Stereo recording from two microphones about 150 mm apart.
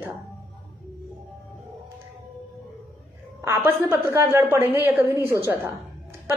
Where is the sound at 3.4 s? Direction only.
15° right (ahead or behind).